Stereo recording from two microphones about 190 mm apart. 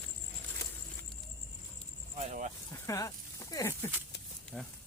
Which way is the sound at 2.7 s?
15° left (ahead or behind).